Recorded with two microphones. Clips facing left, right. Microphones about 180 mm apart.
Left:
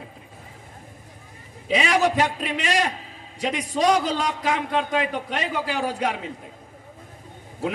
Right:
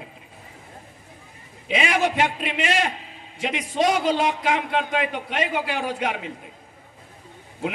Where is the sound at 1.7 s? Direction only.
40° left (ahead or behind).